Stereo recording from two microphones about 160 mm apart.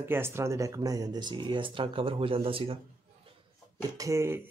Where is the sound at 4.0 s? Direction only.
15° right (ahead or behind).